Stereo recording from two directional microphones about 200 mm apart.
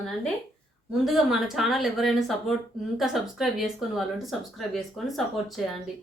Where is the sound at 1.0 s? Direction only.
Centre (ahead or behind).